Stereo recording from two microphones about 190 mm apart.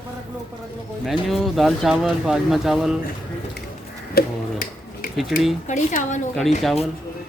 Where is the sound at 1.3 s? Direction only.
Centre (ahead or behind).